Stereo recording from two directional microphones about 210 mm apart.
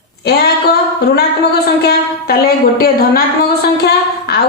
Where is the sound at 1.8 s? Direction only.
45° left (ahead or behind).